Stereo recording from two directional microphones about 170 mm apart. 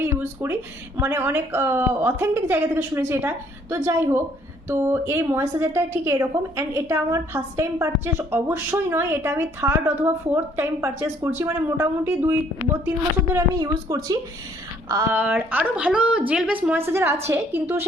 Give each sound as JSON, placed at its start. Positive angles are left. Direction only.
{"t": 0.0, "sound": "a sound", "side_deg": -15}
{"t": 0.9, "sound": "a woman's voice", "side_deg": -15}
{"t": 15.1, "sound": "a woman's voice", "side_deg": -10}